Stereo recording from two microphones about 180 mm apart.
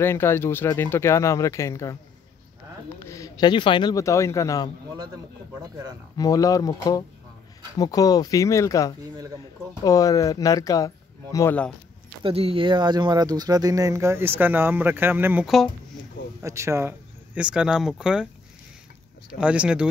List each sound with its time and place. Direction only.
0.0 s speech: 15° left (ahead or behind)
3.0 s speech: 15° left (ahead or behind)
6.1 s speech: 20° left (ahead or behind)
12.2 s speech: 30° right (ahead or behind); by 15.7 s centre (ahead or behind)
16.4 s speech: 15° right (ahead or behind)
19.3 s speech: 5° right (ahead or behind)